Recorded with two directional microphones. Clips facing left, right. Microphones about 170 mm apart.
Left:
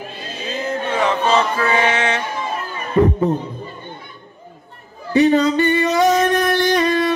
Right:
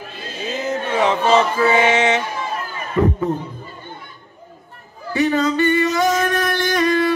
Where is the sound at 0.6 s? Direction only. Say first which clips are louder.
Right 1 dB; 20° right (ahead or behind).